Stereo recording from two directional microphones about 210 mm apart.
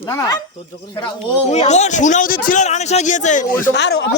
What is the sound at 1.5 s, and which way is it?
A man's voice, 30° left (ahead or behind).